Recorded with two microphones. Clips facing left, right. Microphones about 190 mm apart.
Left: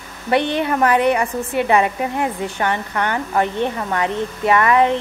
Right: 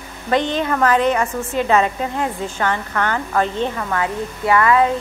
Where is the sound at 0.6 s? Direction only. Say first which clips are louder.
Even; 15° left (ahead or behind).